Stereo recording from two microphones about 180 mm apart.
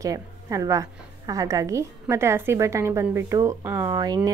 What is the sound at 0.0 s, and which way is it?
A woman's voice, 20° right (ahead or behind).